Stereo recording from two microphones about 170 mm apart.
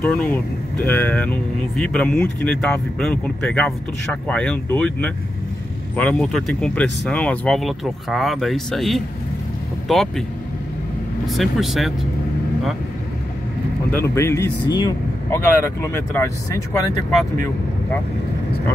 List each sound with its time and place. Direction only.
0.0 s speech: 5° left (ahead or behind)
11.2 s speech: centre (ahead or behind)
13.9 s speech: 15° left (ahead or behind)